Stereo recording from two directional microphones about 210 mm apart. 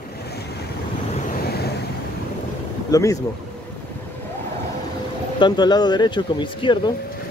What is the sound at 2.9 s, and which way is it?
Speech, 15° left (ahead or behind).